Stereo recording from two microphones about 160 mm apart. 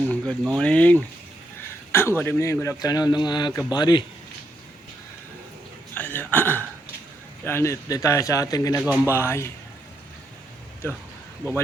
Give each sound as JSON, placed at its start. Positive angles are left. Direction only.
{"t": 0.1, "sound": "a man's voice", "side_deg": 5}
{"t": 5.9, "sound": "a sound", "side_deg": 10}
{"t": 7.4, "sound": "a man's voice", "side_deg": 15}
{"t": 8.8, "sound": "speech", "side_deg": -10}
{"t": 9.1, "sound": "speech", "side_deg": 15}